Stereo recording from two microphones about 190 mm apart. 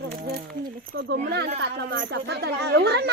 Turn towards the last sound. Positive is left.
turn(degrees=-60)  # may be behind; listen again after turning